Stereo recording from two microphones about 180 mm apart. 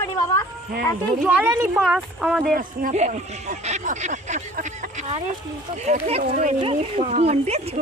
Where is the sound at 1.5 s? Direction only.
15° right (ahead or behind).